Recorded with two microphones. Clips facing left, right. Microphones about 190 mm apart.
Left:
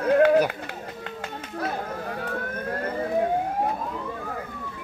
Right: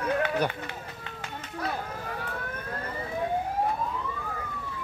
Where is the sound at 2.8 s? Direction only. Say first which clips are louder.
Left 8 dB; 60° left (ahead or behind).